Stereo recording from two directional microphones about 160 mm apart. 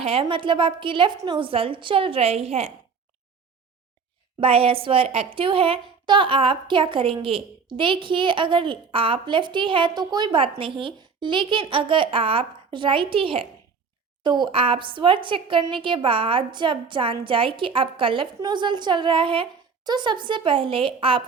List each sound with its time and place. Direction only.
0.0 s a woman's voice: 35° right (ahead or behind)
4.4 s a woman's voice: 35° right (ahead or behind)